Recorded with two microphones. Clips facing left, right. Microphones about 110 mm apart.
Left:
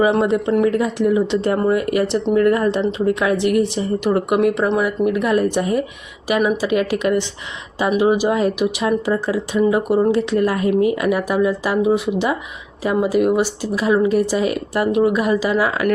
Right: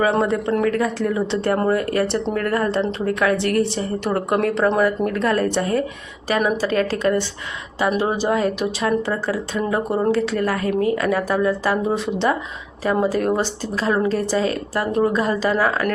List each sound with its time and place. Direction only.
0.2 s speech: 15° left (ahead or behind)